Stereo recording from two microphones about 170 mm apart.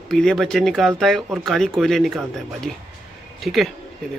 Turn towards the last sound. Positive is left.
turn(degrees=0)  # may be behind; listen again after turning